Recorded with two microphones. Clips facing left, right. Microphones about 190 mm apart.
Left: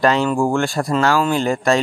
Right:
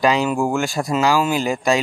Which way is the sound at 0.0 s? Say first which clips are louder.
Left 1 dB; 5° right (ahead or behind).